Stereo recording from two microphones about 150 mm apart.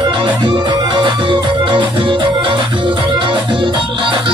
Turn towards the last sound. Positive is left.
turn(degrees=-35)  # may be behind; listen again after turning